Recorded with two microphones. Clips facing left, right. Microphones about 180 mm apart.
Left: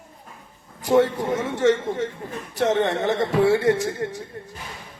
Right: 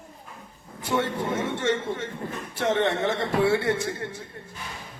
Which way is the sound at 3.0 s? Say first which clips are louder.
Left 4 dB; 20° left (ahead or behind).